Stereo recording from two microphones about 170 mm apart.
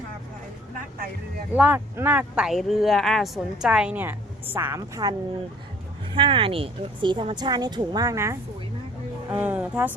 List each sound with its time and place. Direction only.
1.5 s speech: 10° right (ahead or behind)
6.1 s speech: 30° right (ahead or behind); by 9.9 s 10° right (ahead or behind)